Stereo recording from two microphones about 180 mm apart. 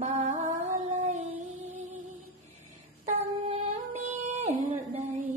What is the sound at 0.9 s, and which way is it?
Dog, 40° right (ahead or behind).